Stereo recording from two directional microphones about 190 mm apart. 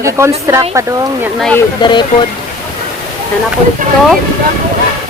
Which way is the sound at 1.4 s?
5° left (ahead or behind).